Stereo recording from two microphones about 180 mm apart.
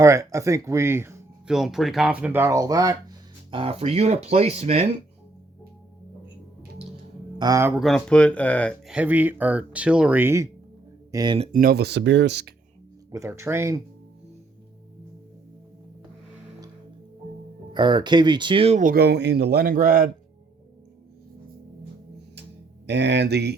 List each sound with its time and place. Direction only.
0.0 s speech: 15° right (ahead or behind)
1.5 s speech: centre (ahead or behind); by 4.9 s 35° right (ahead or behind)
7.3 s speech: 20° right (ahead or behind)
7.8 s speech: centre (ahead or behind)
8.9 s speech: 10° right (ahead or behind)
11.5 s speech: 60° right (ahead or behind)
13.1 s speech: 15° right (ahead or behind)
17.7 s speech: 25° right (ahead or behind); by 20.1 s 50° right (ahead or behind)
22.9 s speech: 75° right (ahead or behind)